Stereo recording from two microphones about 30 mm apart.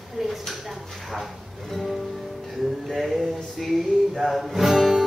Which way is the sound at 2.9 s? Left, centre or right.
Centre.